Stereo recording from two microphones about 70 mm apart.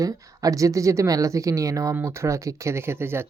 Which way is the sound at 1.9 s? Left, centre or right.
Right.